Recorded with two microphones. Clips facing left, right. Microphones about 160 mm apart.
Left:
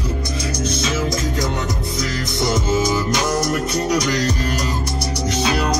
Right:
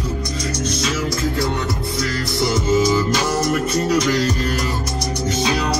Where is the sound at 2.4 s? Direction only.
20° left (ahead or behind).